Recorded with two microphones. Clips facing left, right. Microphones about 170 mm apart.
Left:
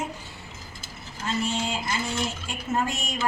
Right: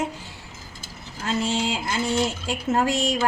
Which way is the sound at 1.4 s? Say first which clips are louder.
Right 3 dB; 90° right.